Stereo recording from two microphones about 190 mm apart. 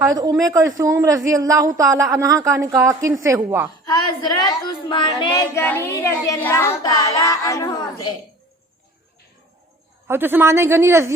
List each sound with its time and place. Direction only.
0.1 s a woman's voice: 20° right (ahead or behind)
3.8 s a woman's voice: 20° left (ahead or behind)
5.5 s child singing: 10° left (ahead or behind)
10.1 s a woman's voice: 10° right (ahead or behind)